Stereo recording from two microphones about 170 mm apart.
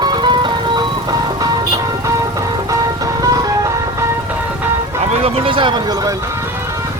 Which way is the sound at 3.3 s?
20° right (ahead or behind).